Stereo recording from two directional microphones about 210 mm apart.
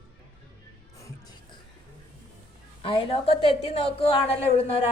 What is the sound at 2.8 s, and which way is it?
A woman's voice, 25° left (ahead or behind).